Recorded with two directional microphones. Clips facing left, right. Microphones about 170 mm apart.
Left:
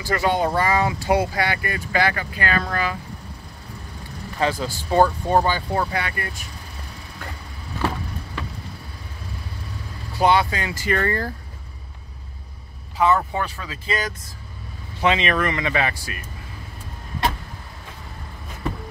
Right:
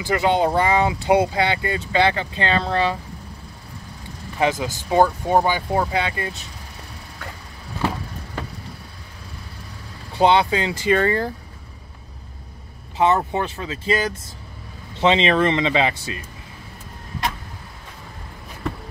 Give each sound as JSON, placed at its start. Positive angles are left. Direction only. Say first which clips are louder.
{"t": 0.0, "sound": "speech", "louder": "right 2 dB", "side_deg": -20}
{"t": 4.4, "sound": "speech", "louder": "right 2 dB", "side_deg": -20}
{"t": 10.1, "sound": "speech", "louder": "right 2 dB", "side_deg": -25}
{"t": 12.9, "sound": "speech", "louder": "right 1 dB", "side_deg": -25}